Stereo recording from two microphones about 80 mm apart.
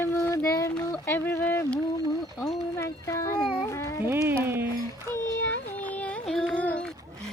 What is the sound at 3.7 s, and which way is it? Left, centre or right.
Cat, left.